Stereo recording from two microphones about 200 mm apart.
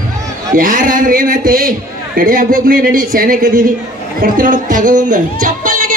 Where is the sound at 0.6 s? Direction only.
45° right (ahead or behind).